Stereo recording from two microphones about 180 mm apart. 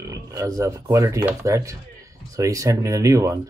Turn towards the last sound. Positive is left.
turn(degrees=-15)  # may be behind; listen again after turning